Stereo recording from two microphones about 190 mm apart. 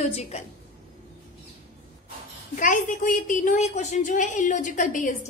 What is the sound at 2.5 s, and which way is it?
A woman's voice, 45° left (ahead or behind).